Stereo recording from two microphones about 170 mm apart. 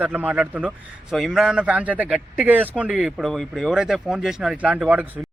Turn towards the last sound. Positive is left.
turn(degrees=-5)  # may be behind; listen again after turning